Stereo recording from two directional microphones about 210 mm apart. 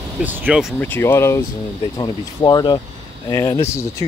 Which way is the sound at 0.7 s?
10° left (ahead or behind).